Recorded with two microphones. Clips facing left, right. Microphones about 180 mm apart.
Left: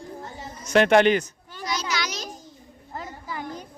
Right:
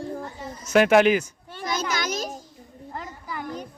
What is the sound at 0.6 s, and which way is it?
Speech, 5° right (ahead or behind).